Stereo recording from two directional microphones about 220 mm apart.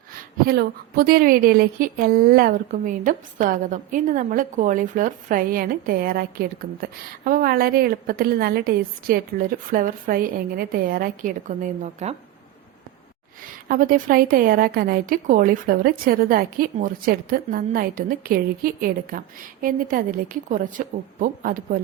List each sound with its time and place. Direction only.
0.4 s a woman's voice: 45° right (ahead or behind)
13.7 s a woman's voice: 40° right (ahead or behind)